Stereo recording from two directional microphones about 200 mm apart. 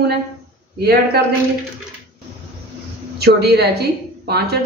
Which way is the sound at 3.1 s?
55° right (ahead or behind).